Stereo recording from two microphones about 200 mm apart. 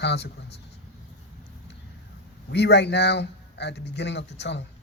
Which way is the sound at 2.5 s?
60° left (ahead or behind).